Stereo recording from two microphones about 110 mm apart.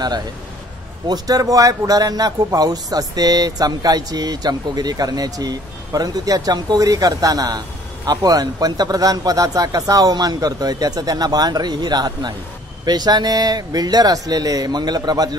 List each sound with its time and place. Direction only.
1.0 s speech: 35° right (ahead or behind)